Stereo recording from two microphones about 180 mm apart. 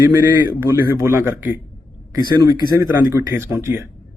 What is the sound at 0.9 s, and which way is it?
Speech, 15° right (ahead or behind).